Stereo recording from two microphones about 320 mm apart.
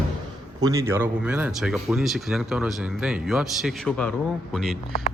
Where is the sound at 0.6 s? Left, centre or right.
Centre.